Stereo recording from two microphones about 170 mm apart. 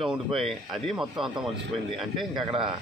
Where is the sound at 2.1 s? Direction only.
Centre (ahead or behind).